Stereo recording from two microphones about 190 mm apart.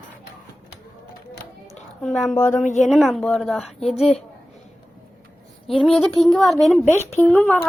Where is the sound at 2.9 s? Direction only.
5° left (ahead or behind).